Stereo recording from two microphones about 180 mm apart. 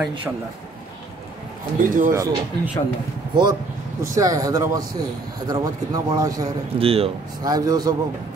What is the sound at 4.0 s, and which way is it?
Speech, 20° right (ahead or behind).